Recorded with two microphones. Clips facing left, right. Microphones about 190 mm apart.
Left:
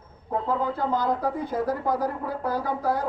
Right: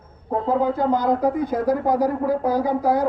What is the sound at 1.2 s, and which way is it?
A man's voice, 15° right (ahead or behind).